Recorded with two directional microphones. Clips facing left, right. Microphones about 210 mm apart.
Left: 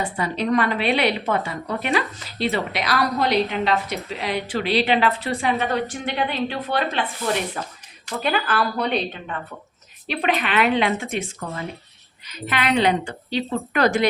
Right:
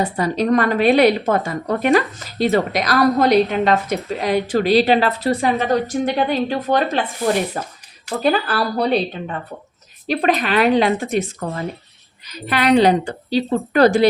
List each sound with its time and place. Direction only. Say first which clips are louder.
0.0 s a woman's voice: right 5 dB; 40° right (ahead or behind)